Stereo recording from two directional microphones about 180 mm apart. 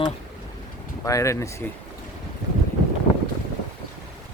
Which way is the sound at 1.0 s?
15° left (ahead or behind).